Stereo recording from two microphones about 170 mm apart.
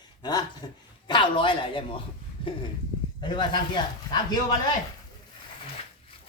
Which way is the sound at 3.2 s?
25° left (ahead or behind).